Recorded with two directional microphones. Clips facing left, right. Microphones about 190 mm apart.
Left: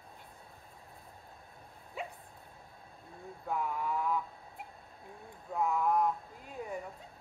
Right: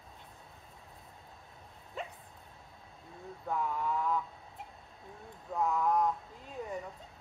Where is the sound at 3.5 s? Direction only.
10° left (ahead or behind).